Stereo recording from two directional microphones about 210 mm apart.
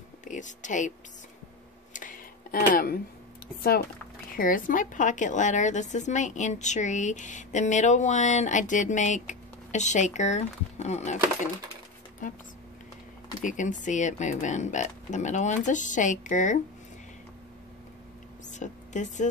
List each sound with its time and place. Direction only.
0.2 s speech: 35° left (ahead or behind)
2.7 s speech: 45° left (ahead or behind)
4.3 s a woman's voice: 40° left (ahead or behind)
13.4 s a woman's voice: 35° left (ahead or behind)
18.5 s a sound: 35° left (ahead or behind)